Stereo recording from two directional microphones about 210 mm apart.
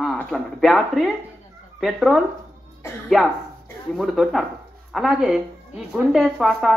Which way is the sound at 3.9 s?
Centre (ahead or behind).